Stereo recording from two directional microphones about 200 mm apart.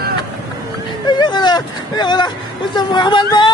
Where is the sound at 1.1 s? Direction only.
20° left (ahead or behind).